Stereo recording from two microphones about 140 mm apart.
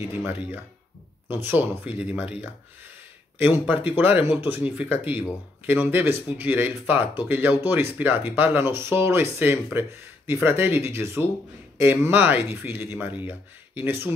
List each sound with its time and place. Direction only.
0.1 s speech: 10° right (ahead or behind)